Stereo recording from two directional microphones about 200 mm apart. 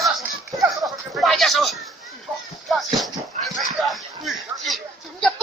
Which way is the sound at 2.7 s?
Centre (ahead or behind).